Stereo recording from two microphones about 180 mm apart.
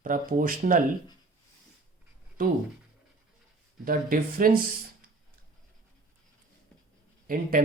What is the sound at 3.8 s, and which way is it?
Speech, 50° right (ahead or behind).